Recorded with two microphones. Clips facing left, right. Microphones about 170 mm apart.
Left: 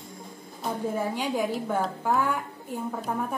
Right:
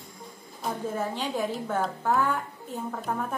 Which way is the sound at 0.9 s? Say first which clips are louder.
Left 3 dB; 10° left (ahead or behind).